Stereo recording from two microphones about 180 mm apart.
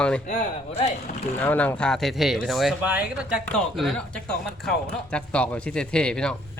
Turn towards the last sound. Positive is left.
turn(degrees=5)  # may be behind; listen again after turning